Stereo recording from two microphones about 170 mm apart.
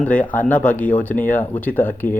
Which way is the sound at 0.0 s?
10° left (ahead or behind).